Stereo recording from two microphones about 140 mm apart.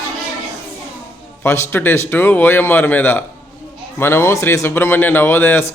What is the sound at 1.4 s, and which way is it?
A man's voice, 20° left (ahead or behind).